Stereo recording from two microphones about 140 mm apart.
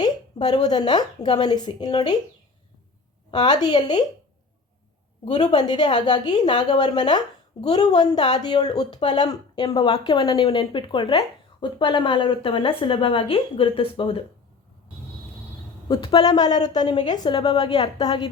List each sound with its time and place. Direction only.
0.0 s a woman's voice: 30° left (ahead or behind)
3.3 s speech: 30° left (ahead or behind)
5.2 s speech: 35° left (ahead or behind)
15.9 s speech: 35° left (ahead or behind)